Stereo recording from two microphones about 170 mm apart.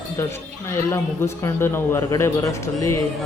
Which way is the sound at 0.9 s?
15° left (ahead or behind).